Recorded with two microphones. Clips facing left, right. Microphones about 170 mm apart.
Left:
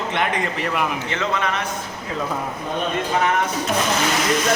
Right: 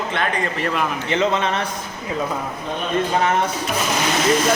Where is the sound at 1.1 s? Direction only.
20° right (ahead or behind).